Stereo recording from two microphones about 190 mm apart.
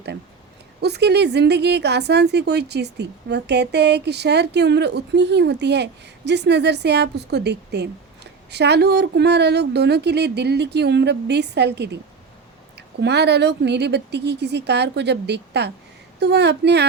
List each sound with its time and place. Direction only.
0.8 s a woman's voice: 60° right (ahead or behind)